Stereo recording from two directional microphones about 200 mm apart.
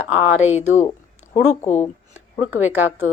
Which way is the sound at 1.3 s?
35° left (ahead or behind).